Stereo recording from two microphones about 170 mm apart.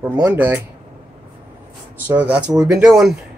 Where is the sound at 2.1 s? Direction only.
10° right (ahead or behind).